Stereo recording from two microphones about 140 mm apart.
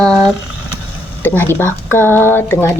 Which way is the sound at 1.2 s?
15° left (ahead or behind).